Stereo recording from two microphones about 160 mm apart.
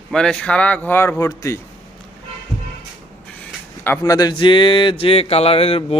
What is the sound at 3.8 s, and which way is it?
Speech, 15° left (ahead or behind).